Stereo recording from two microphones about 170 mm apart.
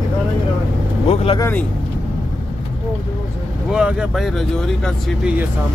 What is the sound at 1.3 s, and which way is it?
Speech, 15° left (ahead or behind).